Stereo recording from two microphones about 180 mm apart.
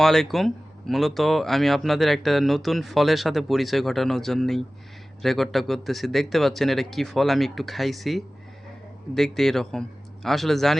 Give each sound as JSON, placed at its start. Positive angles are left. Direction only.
{"t": 0.0, "sound": "speech", "side_deg": 0}